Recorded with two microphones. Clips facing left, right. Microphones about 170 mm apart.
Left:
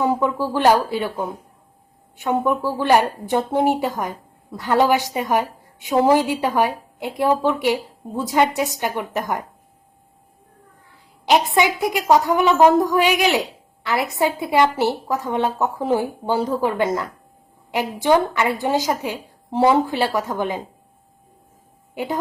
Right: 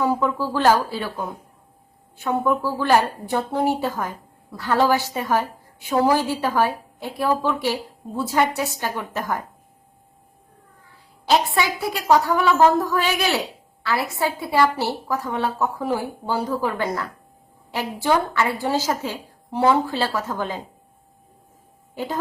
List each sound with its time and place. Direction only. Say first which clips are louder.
0.0 s a woman's voice: left 2 dB; 20° left (ahead or behind)
11.3 s a woman's voice: left 3 dB; 20° left (ahead or behind)
21.9 s a woman's voice: left 3 dB; 10° left (ahead or behind)